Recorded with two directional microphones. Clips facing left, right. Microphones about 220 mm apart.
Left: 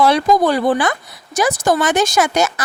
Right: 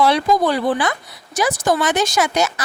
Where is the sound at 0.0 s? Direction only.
45° left (ahead or behind).